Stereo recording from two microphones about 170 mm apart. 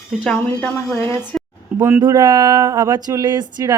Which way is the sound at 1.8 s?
15° right (ahead or behind).